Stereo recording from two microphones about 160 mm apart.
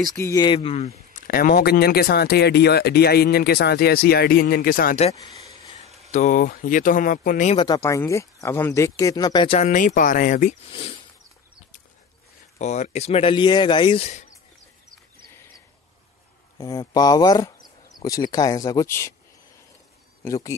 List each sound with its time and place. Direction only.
0.1 s speech: 20° left (ahead or behind); by 1.2 s 40° left (ahead or behind)
1.2 s speech: 65° left (ahead or behind)
5.1 s a sound: 40° right (ahead or behind)
6.1 s speech: 55° left (ahead or behind)
7.5 s speech: 25° left (ahead or behind)
9.6 s speech: 50° left (ahead or behind)
10.7 s speech: 35° left (ahead or behind)
12.5 s speech: 45° left (ahead or behind); by 14.0 s 30° left (ahead or behind)
16.5 s speech: 20° left (ahead or behind)
20.2 s speech: 20° left (ahead or behind)